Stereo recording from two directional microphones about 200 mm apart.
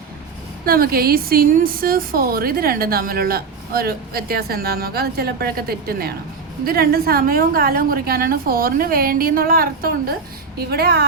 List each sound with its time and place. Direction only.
0.6 s speech: 50° right (ahead or behind)